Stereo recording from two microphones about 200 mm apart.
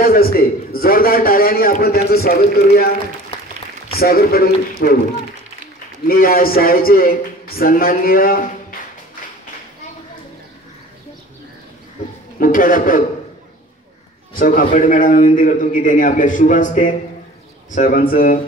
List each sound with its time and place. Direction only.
0.0 s a man's voice: 50° left (ahead or behind)
3.9 s a man's voice: 50° left (ahead or behind)
6.0 s a man's voice: 45° left (ahead or behind)
12.4 s a man's voice: 45° left (ahead or behind)
14.3 s a man's voice: 45° left (ahead or behind)